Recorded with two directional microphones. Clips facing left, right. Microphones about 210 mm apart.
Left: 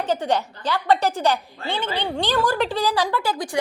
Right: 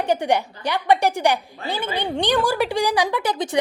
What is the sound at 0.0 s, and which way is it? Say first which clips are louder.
A woman's voice: right 2 dB; 15° right (ahead or behind).